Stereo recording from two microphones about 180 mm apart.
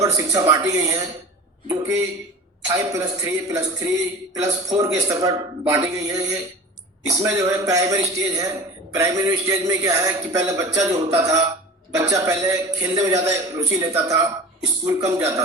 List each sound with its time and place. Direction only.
0.0 s a man's voice: 15° right (ahead or behind)